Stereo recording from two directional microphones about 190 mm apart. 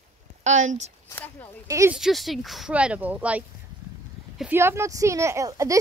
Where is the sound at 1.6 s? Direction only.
15° right (ahead or behind).